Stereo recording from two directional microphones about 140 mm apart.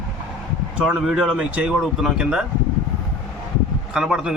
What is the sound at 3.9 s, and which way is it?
Speech, 5° right (ahead or behind).